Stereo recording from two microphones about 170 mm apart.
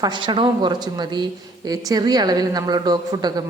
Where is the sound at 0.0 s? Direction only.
25° right (ahead or behind).